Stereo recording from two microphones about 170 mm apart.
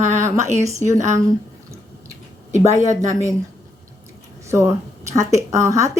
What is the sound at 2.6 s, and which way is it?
Speech, 20° right (ahead or behind).